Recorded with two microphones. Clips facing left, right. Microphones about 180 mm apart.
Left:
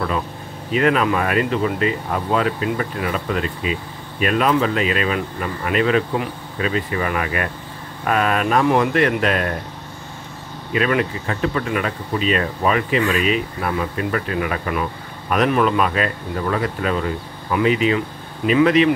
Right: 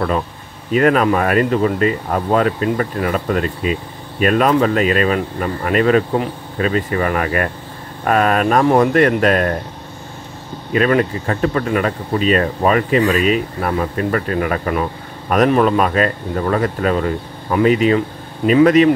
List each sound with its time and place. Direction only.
0.7 s speech: 45° right (ahead or behind)
10.7 s speech: 40° right (ahead or behind)